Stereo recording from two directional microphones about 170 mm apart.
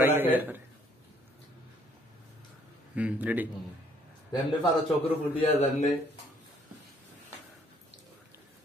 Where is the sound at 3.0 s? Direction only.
10° right (ahead or behind).